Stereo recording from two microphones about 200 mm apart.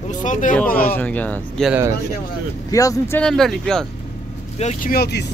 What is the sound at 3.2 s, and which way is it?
Speech, centre (ahead or behind).